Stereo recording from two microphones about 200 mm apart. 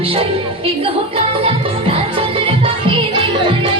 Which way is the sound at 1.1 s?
30° right (ahead or behind).